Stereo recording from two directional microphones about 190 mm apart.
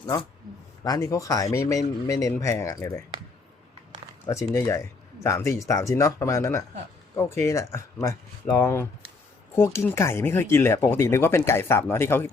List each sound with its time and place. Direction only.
0.0 s speech: 25° left (ahead or behind)
4.5 s speech: 15° left (ahead or behind)